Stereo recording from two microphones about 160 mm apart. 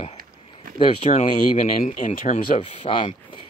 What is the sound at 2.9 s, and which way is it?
Speech, 30° left (ahead or behind).